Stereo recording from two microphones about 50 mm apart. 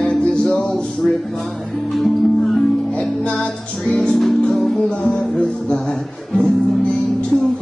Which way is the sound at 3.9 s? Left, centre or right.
Centre.